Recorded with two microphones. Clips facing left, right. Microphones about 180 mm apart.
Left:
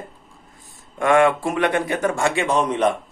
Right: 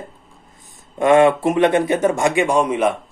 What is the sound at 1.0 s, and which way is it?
Speech, 20° right (ahead or behind).